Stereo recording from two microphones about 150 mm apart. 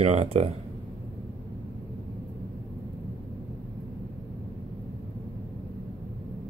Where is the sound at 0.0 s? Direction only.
45° right (ahead or behind).